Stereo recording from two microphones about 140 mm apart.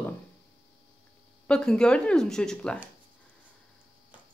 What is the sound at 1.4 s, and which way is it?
Speech, 5° left (ahead or behind).